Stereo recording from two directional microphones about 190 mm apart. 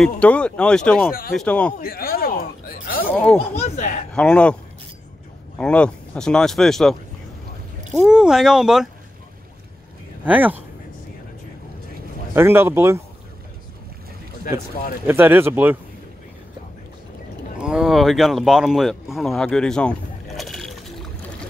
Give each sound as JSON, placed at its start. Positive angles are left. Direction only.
{"t": 0.2, "sound": "speech", "side_deg": 5}
{"t": 1.8, "sound": "speech", "side_deg": 50}
{"t": 3.1, "sound": "speech", "side_deg": 10}
{"t": 3.5, "sound": "speech", "side_deg": 40}
{"t": 4.1, "sound": "speech", "side_deg": 5}
{"t": 5.6, "sound": "speech", "side_deg": 5}
{"t": 10.2, "sound": "speech", "side_deg": -10}
{"t": 12.4, "sound": "speech", "side_deg": -10}
{"t": 15.0, "sound": "speech", "side_deg": -10}
{"t": 17.6, "sound": "speech", "side_deg": -5}